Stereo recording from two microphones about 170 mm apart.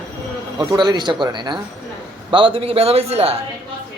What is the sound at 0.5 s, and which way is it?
A man's voice, 25° right (ahead or behind).